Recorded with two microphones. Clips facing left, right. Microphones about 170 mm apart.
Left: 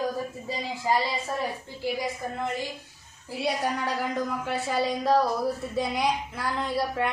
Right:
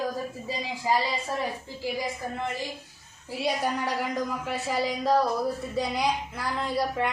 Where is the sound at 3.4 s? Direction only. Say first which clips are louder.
Even; 10° right (ahead or behind).